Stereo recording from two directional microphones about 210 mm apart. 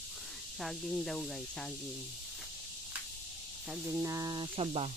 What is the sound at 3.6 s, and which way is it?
Speech, 10° right (ahead or behind).